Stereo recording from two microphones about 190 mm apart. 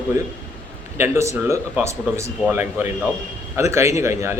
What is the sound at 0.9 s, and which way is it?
Speech, 15° right (ahead or behind).